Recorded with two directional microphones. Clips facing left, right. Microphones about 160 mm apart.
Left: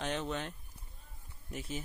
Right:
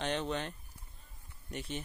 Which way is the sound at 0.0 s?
Centre (ahead or behind).